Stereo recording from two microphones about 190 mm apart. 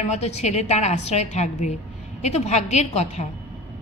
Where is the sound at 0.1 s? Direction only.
35° left (ahead or behind).